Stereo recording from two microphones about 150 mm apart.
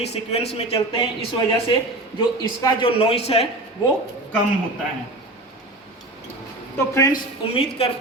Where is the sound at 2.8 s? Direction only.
40° left (ahead or behind).